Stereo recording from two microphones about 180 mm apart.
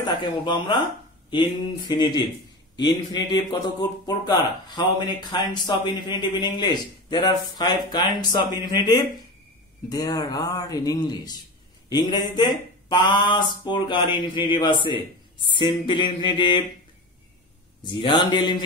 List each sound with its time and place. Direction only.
0.2 s speech: 25° left (ahead or behind)
17.8 s speech: 25° left (ahead or behind)